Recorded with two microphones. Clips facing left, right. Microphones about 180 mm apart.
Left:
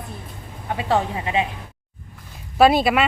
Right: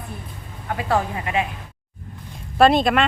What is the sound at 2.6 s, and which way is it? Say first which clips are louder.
Speech: even; 5° left (ahead or behind).